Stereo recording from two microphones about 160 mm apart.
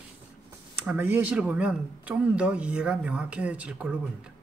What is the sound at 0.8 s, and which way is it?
Speech, 10° right (ahead or behind).